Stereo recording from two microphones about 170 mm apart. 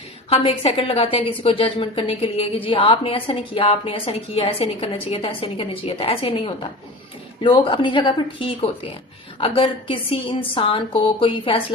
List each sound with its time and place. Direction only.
0.3 s a woman's voice: 35° left (ahead or behind)